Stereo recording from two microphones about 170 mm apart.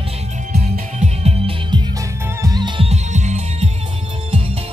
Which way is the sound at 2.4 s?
25° right (ahead or behind).